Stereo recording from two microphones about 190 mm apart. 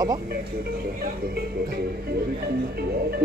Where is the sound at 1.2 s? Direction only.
55° right (ahead or behind).